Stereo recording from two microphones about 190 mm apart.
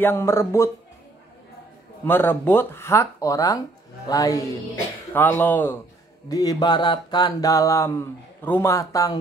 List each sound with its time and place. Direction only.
0.0 s speech: 15° left (ahead or behind)
2.0 s speech: 10° left (ahead or behind)
6.2 s mantra: 20° left (ahead or behind)